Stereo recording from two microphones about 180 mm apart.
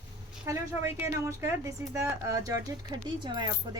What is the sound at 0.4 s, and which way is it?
Speech, 15° right (ahead or behind).